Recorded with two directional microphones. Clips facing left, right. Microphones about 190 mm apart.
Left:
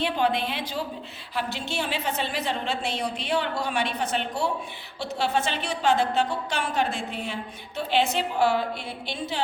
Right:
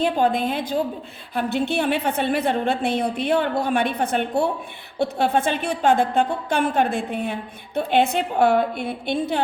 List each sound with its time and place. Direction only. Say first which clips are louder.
0.0 s a woman's voice: right 5 dB; 45° right (ahead or behind)